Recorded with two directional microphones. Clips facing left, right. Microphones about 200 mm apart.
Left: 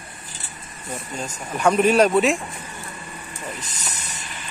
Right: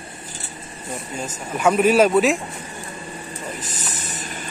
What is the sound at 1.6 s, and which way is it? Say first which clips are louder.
Speech: right 1 dB; 5° right (ahead or behind).